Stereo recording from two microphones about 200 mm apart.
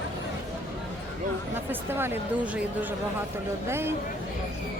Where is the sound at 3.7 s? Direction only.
10° right (ahead or behind).